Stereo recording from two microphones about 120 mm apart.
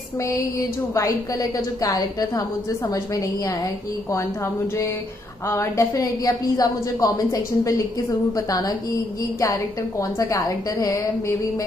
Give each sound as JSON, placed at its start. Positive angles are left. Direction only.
{"t": 0.9, "sound": "a woman's voice", "side_deg": 30}
{"t": 5.5, "sound": "a woman's voice", "side_deg": 25}